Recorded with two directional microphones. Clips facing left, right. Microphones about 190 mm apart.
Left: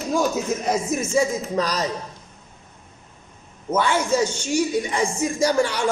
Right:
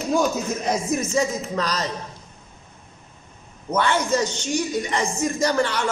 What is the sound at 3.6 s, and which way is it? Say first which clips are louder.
A woman's voice: left 1 dB; 5° left (ahead or behind).